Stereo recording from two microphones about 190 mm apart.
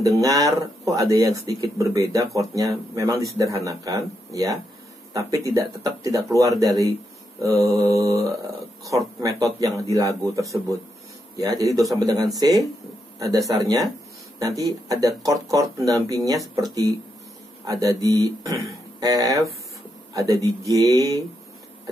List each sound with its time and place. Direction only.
0.0 s speech: 20° right (ahead or behind)
14.9 s speech: 20° right (ahead or behind)